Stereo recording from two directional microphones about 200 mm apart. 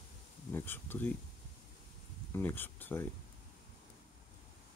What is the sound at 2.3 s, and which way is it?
Speech, 10° left (ahead or behind).